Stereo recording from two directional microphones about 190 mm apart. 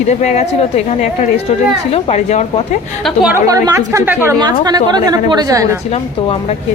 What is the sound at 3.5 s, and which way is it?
A woman's voice, 15° right (ahead or behind).